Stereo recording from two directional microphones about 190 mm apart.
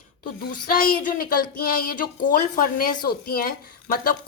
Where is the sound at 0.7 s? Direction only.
50° left (ahead or behind).